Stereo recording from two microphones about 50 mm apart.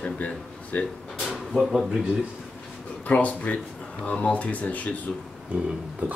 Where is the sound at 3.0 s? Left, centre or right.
Left.